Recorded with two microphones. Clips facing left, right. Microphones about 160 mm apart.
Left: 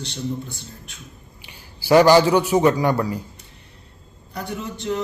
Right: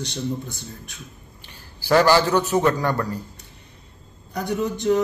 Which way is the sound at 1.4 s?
10° left (ahead or behind).